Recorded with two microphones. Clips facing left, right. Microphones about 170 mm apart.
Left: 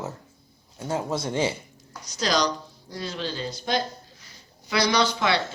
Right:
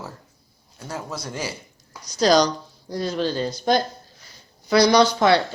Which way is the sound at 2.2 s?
40° right (ahead or behind).